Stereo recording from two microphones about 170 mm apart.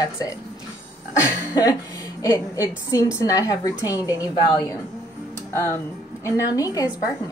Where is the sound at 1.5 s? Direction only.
25° left (ahead or behind).